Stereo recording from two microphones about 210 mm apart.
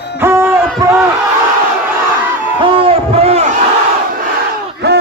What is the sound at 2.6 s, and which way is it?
Crowd, 25° right (ahead or behind).